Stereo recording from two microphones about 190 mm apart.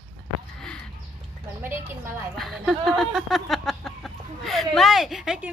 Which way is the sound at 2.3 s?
Centre (ahead or behind).